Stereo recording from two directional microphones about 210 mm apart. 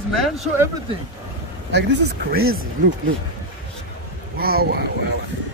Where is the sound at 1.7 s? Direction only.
50° right (ahead or behind).